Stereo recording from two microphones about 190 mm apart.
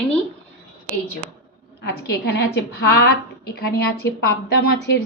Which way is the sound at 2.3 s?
60° left (ahead or behind).